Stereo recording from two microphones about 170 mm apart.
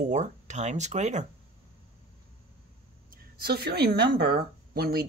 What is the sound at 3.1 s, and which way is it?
Speech, 65° right (ahead or behind).